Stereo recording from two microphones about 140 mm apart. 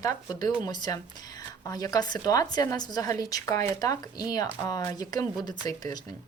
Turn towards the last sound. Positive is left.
turn(degrees=30)  # may be behind; listen again after turning